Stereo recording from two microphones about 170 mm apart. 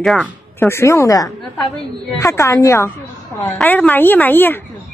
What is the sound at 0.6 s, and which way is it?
A woman's voice, 15° left (ahead or behind).